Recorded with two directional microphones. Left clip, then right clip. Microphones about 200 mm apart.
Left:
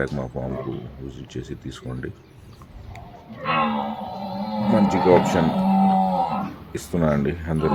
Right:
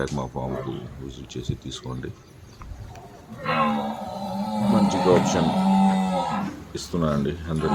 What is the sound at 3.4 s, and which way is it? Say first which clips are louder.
Speech: left 1 dB; 55° right (ahead or behind).